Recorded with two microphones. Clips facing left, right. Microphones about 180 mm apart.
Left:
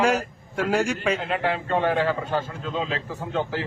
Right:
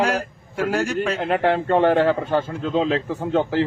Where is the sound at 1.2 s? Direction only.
55° right (ahead or behind).